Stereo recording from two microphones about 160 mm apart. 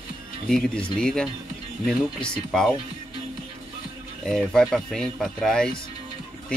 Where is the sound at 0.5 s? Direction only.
5° left (ahead or behind).